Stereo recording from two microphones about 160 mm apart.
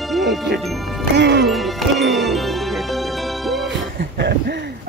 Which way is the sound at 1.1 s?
90° right.